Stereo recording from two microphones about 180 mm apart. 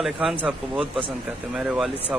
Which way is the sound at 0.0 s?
Centre (ahead or behind).